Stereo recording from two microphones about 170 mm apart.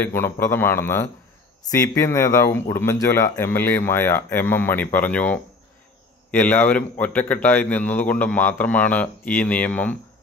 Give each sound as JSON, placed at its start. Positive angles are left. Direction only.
{"t": 0.0, "sound": "a man's voice", "side_deg": 15}